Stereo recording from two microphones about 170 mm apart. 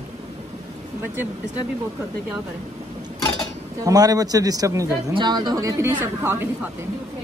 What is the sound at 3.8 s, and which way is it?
A man's voice, 20° right (ahead or behind).